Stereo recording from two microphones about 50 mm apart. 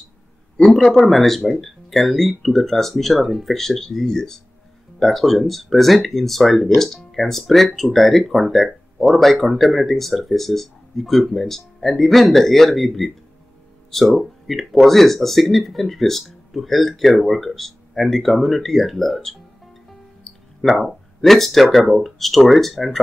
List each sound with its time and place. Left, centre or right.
0.6 s speech: centre
20.6 s speech: centre